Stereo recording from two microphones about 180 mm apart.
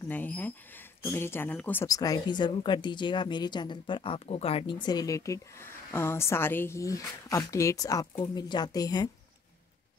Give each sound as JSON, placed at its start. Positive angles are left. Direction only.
{"t": 0.1, "sound": "speech", "side_deg": 10}